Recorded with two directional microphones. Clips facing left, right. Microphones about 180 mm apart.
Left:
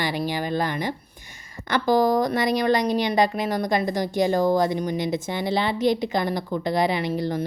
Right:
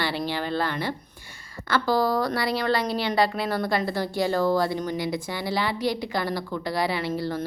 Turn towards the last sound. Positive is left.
turn(degrees=15)  # may be behind; listen again after turning